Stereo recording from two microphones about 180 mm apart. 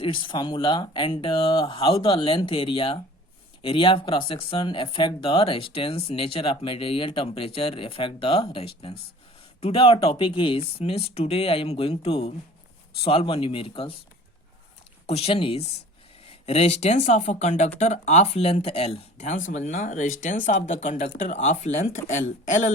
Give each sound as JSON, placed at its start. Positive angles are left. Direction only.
{"t": 0.0, "sound": "speech", "side_deg": 30}
{"t": 15.0, "sound": "speech", "side_deg": 35}